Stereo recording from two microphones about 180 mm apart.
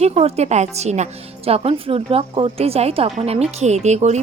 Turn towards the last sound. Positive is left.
turn(degrees=-40)  # may be behind; listen again after turning